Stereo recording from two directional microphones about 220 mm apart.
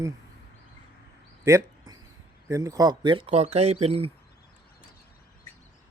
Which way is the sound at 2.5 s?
15° right (ahead or behind).